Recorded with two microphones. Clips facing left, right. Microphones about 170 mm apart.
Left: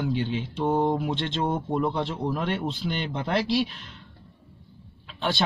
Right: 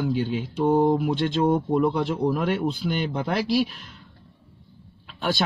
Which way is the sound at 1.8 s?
10° right (ahead or behind).